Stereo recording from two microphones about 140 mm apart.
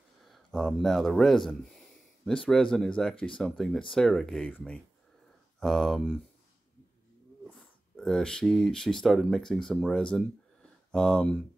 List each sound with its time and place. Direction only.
0.3 s speech: centre (ahead or behind)
7.4 s speech: 5° left (ahead or behind)